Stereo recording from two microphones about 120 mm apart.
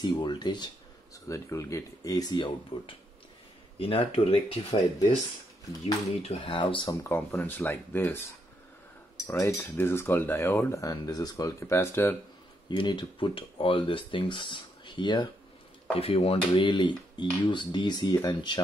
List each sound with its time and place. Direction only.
0.0 s speech: 35° left (ahead or behind)
1.1 s speech: 25° left (ahead or behind)
3.7 s speech: 50° left (ahead or behind)
6.2 s speech: 45° left (ahead or behind)
6.9 s speech: 20° left (ahead or behind)
9.3 s speech: 20° left (ahead or behind)
12.6 s speech: 40° left (ahead or behind)
15.9 s speech: 55° left (ahead or behind); by 18.6 s 35° left (ahead or behind)